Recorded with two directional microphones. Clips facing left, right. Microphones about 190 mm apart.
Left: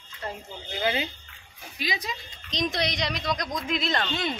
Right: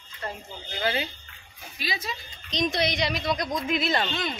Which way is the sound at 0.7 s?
20° left (ahead or behind).